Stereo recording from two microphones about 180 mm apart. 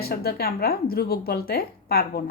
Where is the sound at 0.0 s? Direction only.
60° left (ahead or behind).